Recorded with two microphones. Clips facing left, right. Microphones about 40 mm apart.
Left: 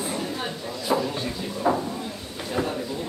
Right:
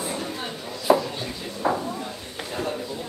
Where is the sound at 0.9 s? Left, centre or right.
Right.